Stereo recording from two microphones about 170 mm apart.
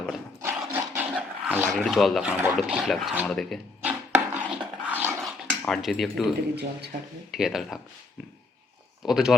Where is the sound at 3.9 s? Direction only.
10° right (ahead or behind).